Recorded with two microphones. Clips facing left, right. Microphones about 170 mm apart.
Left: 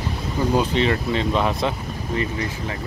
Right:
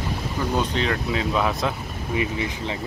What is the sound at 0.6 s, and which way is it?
Speech, centre (ahead or behind).